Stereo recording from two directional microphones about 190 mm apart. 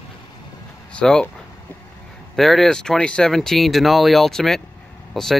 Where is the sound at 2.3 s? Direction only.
Centre (ahead or behind).